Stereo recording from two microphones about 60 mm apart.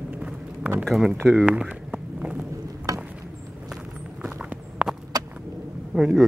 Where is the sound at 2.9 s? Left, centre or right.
Right.